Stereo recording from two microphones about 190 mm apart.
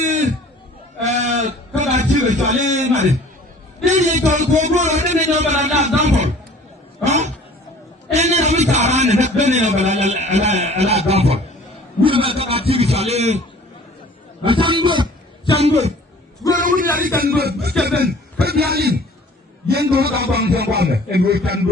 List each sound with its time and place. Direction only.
1.0 s fowl: 40° right (ahead or behind)
1.8 s a man's voice: 40° right (ahead or behind)
7.0 s a sound: 35° right (ahead or behind)
8.1 s a man's voice: 35° right (ahead or behind)
14.4 s a man's voice: 25° right (ahead or behind)
16.6 s a man's voice: 45° right (ahead or behind)